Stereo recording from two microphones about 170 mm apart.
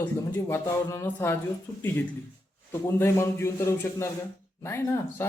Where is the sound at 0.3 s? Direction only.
15° left (ahead or behind).